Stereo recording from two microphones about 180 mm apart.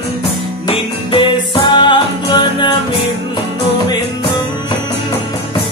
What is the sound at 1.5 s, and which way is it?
Music, 25° left (ahead or behind).